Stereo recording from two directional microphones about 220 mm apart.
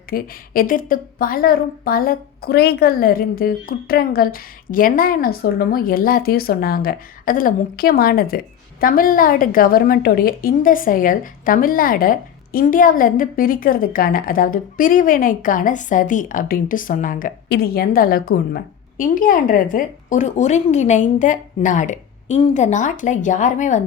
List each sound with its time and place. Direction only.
0.1 s a woman's voice: 40° left (ahead or behind)